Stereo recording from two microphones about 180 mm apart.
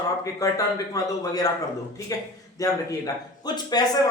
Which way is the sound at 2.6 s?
20° left (ahead or behind).